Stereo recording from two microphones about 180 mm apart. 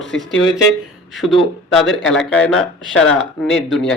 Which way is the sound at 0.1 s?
90° left.